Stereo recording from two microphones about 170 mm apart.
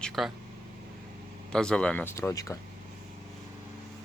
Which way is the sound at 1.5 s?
5° left (ahead or behind).